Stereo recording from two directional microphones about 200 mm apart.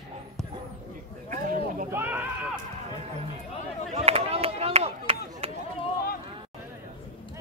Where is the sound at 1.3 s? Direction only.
40° right (ahead or behind).